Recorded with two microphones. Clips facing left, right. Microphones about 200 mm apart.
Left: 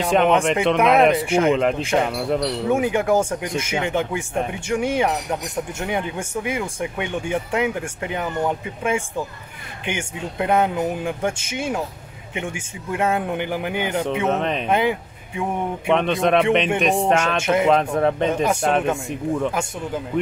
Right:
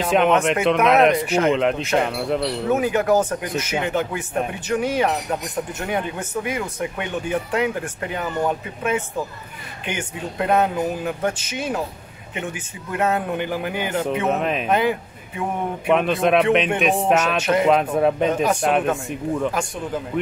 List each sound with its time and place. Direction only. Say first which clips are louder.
0.0 s speech: even; centre (ahead or behind)
2.7 s speech: right 1 dB; 15° left (ahead or behind)
14.2 s speech: even; 5° right (ahead or behind)
14.7 s speech: even; 15° left (ahead or behind)
15.9 s speech: right 1 dB; 5° right (ahead or behind)